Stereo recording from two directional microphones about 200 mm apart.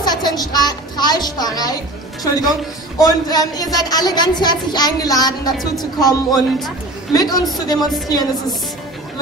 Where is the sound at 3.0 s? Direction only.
20° left (ahead or behind).